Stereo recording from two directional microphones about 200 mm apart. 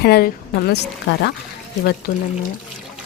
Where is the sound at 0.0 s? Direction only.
50° left (ahead or behind).